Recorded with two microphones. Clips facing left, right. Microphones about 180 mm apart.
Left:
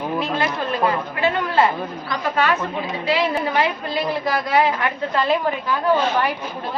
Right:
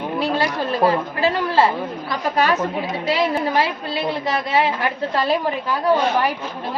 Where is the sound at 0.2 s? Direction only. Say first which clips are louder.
Right 5 dB; 35° right (ahead or behind).